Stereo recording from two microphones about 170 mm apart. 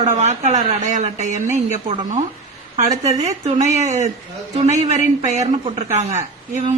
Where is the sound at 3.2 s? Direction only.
40° right (ahead or behind).